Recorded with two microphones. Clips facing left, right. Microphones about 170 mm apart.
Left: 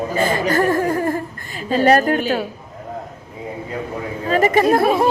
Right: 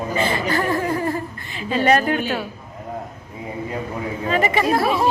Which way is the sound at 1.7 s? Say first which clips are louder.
Left 3 dB; 40° left (ahead or behind).